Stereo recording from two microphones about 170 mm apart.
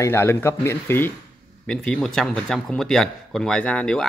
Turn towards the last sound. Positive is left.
turn(degrees=5)  # may be behind; listen again after turning